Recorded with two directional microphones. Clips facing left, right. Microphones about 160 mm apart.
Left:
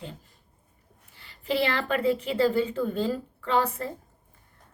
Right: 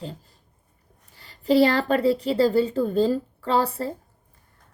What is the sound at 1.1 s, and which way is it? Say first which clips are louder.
A woman's voice: right 9 dB; 40° right (ahead or behind).